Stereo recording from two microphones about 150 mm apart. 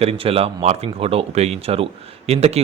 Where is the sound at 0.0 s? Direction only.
40° right (ahead or behind).